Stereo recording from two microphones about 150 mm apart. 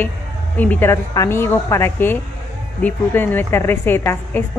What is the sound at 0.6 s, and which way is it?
Speech, 10° left (ahead or behind).